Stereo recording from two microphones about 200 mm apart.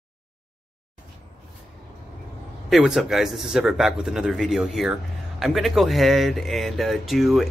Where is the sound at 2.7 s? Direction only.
Centre (ahead or behind).